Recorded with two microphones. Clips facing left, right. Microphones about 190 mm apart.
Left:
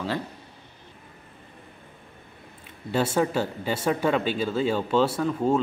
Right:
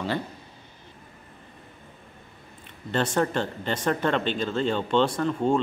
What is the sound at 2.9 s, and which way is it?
Speech, 5° left (ahead or behind).